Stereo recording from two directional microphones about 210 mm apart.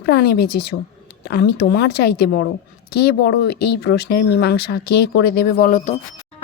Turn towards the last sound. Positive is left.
turn(degrees=35)  # may be behind; listen again after turning